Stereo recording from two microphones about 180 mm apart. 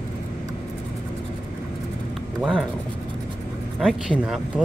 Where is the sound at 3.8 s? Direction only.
5° right (ahead or behind).